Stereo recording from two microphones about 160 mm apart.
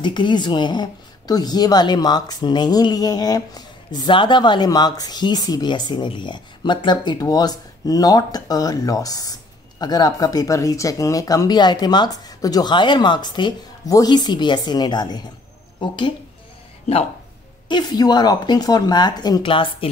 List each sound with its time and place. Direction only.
0.0 s speech: 30° left (ahead or behind)
17.6 s speech: 25° left (ahead or behind)